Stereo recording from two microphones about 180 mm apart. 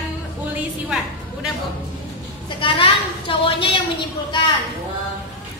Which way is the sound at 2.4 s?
30° left (ahead or behind).